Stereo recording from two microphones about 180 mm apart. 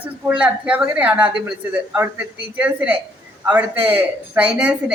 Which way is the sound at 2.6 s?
5° right (ahead or behind).